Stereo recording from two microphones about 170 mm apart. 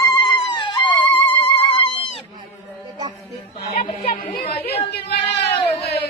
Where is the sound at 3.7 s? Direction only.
40° left (ahead or behind).